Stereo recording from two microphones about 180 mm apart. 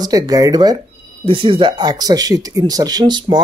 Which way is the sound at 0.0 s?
20° right (ahead or behind).